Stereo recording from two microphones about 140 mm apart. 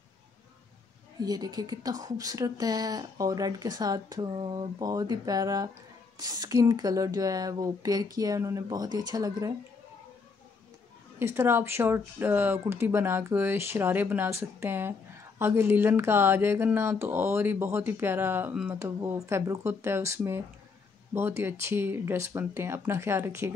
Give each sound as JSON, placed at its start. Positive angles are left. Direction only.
{"t": 1.2, "sound": "speech", "side_deg": -30}
{"t": 11.1, "sound": "speech", "side_deg": -15}
{"t": 18.8, "sound": "speech", "side_deg": -20}